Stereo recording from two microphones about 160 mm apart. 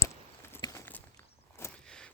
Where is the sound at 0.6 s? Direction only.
25° left (ahead or behind).